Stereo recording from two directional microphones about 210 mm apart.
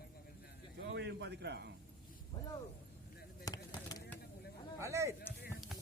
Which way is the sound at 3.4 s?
15° left (ahead or behind).